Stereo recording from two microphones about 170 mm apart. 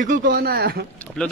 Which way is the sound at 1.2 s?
5° left (ahead or behind).